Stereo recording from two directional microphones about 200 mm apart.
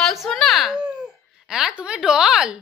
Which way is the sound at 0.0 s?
Centre (ahead or behind).